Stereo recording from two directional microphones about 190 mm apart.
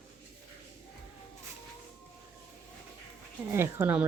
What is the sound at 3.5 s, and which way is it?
Speech, 10° right (ahead or behind).